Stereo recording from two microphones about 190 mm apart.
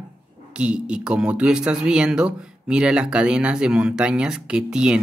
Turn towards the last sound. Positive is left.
turn(degrees=-5)  # may be behind; listen again after turning